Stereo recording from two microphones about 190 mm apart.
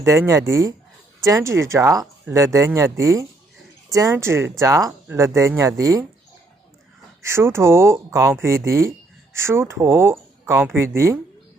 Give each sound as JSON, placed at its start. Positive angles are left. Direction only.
{"t": 0.0, "sound": "speech", "side_deg": -15}
{"t": 7.2, "sound": "speech", "side_deg": -15}